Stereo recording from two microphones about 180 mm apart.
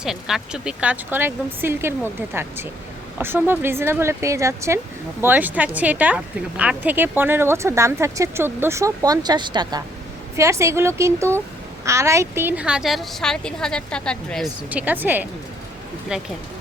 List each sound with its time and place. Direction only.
0.0 s a woman's voice: centre (ahead or behind)
14.7 s a woman's voice: 10° right (ahead or behind)